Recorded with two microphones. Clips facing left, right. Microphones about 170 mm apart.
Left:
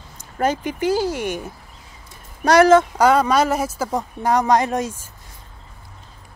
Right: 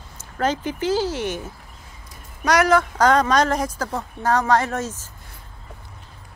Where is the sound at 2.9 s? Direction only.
10° left (ahead or behind).